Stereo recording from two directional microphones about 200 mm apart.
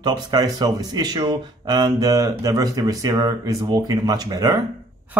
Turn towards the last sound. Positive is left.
turn(degrees=-20)  # may be behind; listen again after turning